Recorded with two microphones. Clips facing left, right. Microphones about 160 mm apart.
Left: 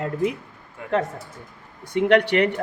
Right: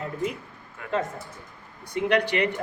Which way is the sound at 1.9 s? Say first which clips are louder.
Left 6 dB; 70° left (ahead or behind).